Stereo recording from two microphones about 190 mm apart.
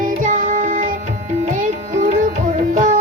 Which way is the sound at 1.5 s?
40° right (ahead or behind).